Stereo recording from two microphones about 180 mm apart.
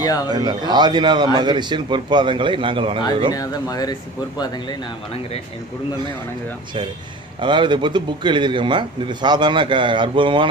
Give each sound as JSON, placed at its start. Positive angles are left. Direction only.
{"t": 0.3, "sound": "a man's voice", "side_deg": -25}
{"t": 3.3, "sound": "speech", "side_deg": 20}
{"t": 7.3, "sound": "a man's voice", "side_deg": -25}